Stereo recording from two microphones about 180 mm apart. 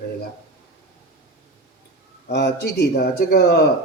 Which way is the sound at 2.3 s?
65° left (ahead or behind).